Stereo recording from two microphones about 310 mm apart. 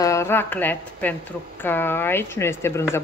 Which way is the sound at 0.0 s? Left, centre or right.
Centre.